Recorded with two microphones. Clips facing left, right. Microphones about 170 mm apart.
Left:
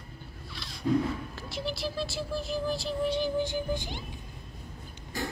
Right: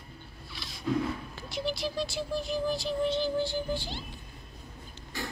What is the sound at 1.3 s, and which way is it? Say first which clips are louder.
Music: right 2 dB; centre (ahead or behind).